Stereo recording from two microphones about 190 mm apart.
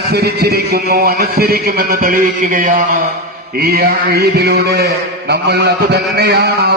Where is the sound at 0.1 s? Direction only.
55° right (ahead or behind).